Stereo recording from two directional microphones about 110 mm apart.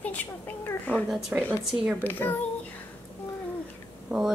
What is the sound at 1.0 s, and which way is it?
Speech, 5° right (ahead or behind).